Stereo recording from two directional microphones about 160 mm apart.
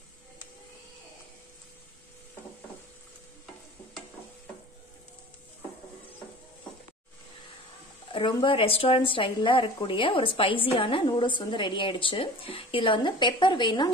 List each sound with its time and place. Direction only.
8.1 s a woman's voice: 30° left (ahead or behind)